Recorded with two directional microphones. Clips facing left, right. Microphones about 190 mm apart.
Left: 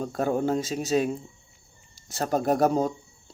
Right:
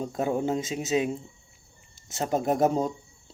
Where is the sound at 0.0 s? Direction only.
20° right (ahead or behind).